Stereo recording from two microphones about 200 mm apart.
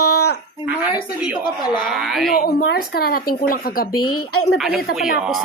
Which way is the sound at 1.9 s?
Centre (ahead or behind).